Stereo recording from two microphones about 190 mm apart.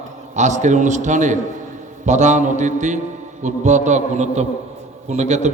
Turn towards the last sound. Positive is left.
turn(degrees=-35)  # may be behind; listen again after turning